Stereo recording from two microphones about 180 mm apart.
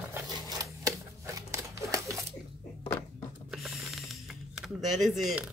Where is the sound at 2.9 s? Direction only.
15° left (ahead or behind).